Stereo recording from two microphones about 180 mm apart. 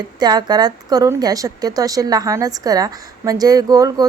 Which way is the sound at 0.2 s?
20° right (ahead or behind).